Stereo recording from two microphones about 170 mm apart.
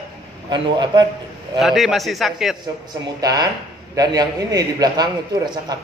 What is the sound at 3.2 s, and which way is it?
Speech, 20° right (ahead or behind).